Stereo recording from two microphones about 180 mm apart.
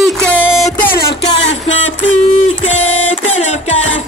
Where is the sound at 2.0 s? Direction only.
40° left (ahead or behind).